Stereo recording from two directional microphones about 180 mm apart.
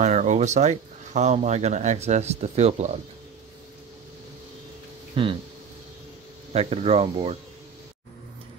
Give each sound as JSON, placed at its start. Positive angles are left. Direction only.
{"t": 0.0, "sound": "speech", "side_deg": -40}
{"t": 5.2, "sound": "speech", "side_deg": -30}
{"t": 6.5, "sound": "speech", "side_deg": -35}